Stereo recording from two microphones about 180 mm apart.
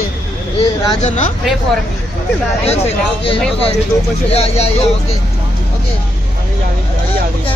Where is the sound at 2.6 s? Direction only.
35° left (ahead or behind).